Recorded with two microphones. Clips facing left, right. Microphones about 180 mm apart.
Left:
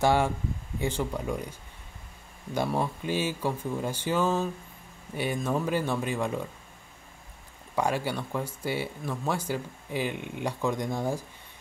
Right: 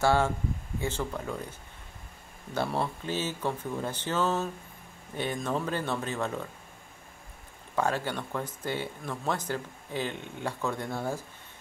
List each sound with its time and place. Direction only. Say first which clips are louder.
0.0 s speech: left 1 dB; 15° left (ahead or behind)
2.5 s speech: left 2 dB; 15° left (ahead or behind)
7.7 s speech: left 1 dB; 10° left (ahead or behind)